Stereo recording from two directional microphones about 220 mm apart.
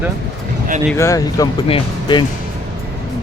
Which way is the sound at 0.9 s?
15° left (ahead or behind).